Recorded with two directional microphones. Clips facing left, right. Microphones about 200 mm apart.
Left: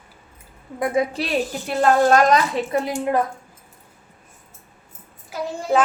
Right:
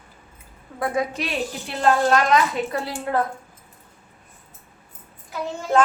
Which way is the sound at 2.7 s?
20° left (ahead or behind).